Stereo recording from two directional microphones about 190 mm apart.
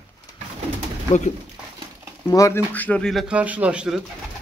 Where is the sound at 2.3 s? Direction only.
15° left (ahead or behind); by 4.0 s 5° right (ahead or behind).